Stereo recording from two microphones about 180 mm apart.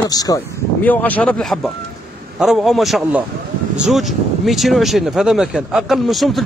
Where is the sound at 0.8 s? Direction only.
10° left (ahead or behind).